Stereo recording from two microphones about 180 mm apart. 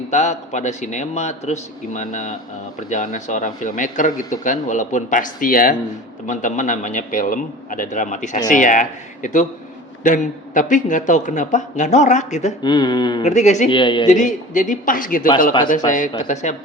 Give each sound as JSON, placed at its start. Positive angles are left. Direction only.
{"t": 0.1, "sound": "a man's voice", "side_deg": 40}
{"t": 12.6, "sound": "speech", "side_deg": 25}
{"t": 13.2, "sound": "a man's voice", "side_deg": 40}
{"t": 13.7, "sound": "speech", "side_deg": 25}
{"t": 14.1, "sound": "a man's voice", "side_deg": 45}